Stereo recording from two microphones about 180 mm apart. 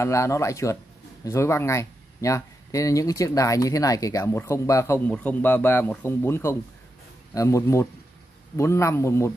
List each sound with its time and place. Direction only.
0.0 s speech: 15° left (ahead or behind)